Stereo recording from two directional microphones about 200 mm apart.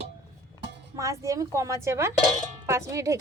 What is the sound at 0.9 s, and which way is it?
A woman's voice, 15° right (ahead or behind).